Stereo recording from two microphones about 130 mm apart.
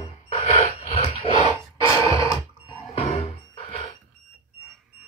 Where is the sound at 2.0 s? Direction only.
25° left (ahead or behind).